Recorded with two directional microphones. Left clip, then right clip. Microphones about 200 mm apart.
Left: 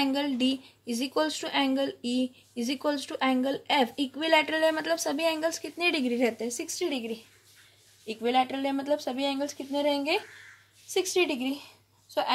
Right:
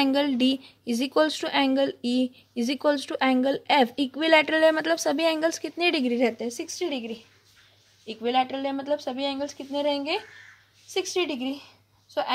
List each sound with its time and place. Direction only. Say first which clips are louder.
0.0 s a woman's voice: right 5 dB; 40° right (ahead or behind); by 7.2 s 20° right (ahead or behind)
8.1 s a woman's voice: right 1 dB; 5° right (ahead or behind)